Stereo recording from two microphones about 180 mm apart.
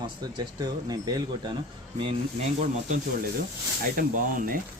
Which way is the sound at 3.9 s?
50° right (ahead or behind).